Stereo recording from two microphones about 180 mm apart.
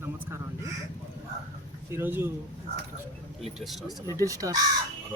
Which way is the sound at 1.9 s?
10° right (ahead or behind).